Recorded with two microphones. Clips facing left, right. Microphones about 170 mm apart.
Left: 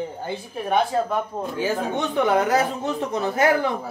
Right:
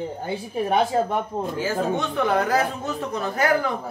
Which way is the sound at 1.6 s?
20° left (ahead or behind).